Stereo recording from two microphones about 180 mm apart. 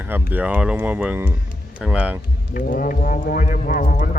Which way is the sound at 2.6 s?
50° left (ahead or behind).